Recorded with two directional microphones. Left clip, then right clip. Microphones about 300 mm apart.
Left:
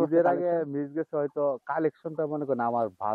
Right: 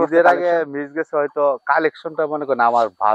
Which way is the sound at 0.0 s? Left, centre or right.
Centre.